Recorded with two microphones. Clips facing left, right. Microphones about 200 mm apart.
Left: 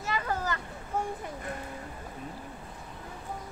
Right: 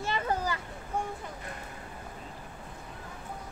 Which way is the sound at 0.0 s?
30° right (ahead or behind).